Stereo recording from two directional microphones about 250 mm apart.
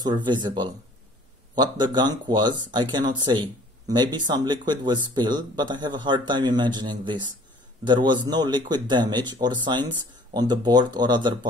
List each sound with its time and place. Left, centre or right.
0.0 s speech: centre